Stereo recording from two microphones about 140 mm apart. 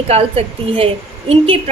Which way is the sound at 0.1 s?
45° right (ahead or behind).